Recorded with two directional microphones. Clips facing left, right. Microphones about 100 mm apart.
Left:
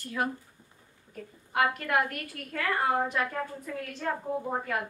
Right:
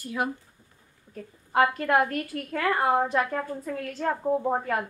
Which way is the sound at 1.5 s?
30° right (ahead or behind).